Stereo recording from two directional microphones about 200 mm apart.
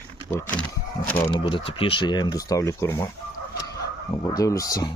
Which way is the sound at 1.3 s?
25° left (ahead or behind).